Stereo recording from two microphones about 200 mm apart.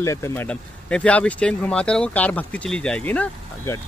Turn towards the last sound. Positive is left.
turn(degrees=5)  # may be behind; listen again after turning